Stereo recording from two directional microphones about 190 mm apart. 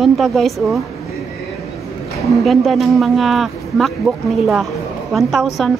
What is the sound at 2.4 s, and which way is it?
Speech, centre (ahead or behind).